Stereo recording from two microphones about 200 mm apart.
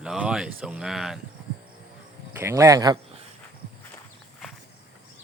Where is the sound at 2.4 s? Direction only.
15° right (ahead or behind).